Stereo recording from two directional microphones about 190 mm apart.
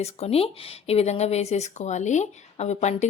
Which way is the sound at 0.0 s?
35° left (ahead or behind).